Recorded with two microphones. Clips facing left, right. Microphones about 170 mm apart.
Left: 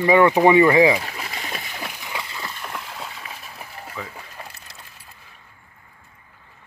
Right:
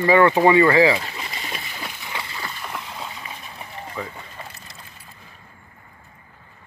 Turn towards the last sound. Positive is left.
turn(degrees=0)  # may be behind; listen again after turning